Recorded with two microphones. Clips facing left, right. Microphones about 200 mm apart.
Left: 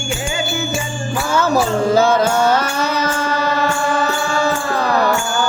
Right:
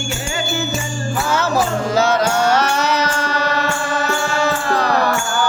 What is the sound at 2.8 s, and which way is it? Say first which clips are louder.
Music: even; 50° left (ahead or behind).